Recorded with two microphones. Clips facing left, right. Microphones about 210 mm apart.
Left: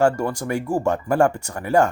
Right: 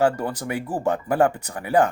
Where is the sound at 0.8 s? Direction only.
15° right (ahead or behind).